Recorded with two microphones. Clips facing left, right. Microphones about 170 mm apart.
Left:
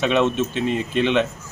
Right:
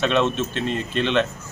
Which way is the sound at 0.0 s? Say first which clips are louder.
Left 2 dB; 10° left (ahead or behind).